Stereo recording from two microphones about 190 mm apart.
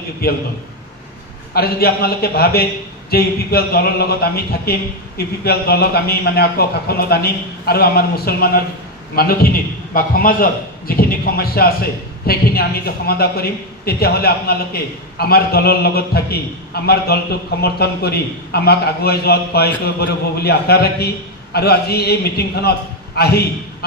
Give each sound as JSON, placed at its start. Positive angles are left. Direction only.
{"t": 0.2, "sound": "a man's voice", "side_deg": 55}
{"t": 1.5, "sound": "a man's voice", "side_deg": 55}